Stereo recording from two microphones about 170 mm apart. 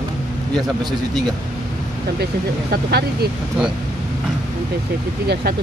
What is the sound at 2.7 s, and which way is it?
Speech, 70° right (ahead or behind).